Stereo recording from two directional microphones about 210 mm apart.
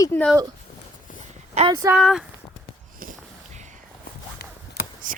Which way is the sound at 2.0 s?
Centre (ahead or behind).